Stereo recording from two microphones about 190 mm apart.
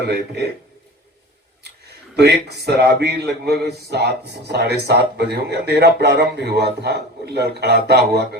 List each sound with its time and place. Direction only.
2.1 s a man's voice: 60° right (ahead or behind)